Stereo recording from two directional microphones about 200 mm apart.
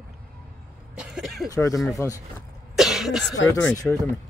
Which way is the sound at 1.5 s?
15° left (ahead or behind).